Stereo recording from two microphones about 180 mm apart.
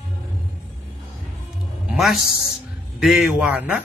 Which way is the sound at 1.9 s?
Centre (ahead or behind).